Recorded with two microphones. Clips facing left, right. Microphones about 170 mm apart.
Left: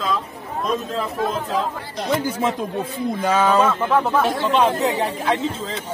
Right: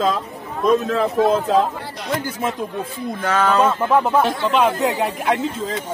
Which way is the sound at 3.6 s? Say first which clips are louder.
Right 2 dB; 15° right (ahead or behind).